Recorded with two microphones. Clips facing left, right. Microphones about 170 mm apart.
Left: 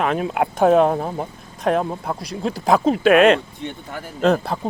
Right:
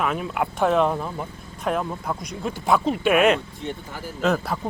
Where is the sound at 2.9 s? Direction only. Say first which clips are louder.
Left 7 dB; 90° left.